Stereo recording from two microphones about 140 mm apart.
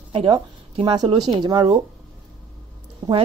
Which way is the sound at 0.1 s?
40° right (ahead or behind).